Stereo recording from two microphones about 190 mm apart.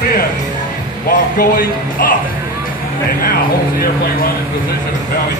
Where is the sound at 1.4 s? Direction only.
50° left (ahead or behind).